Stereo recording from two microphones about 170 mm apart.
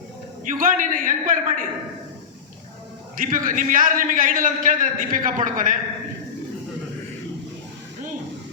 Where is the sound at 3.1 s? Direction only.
55° right (ahead or behind).